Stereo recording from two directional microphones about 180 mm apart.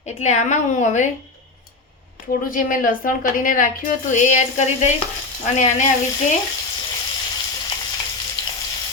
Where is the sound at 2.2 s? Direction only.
50° left (ahead or behind).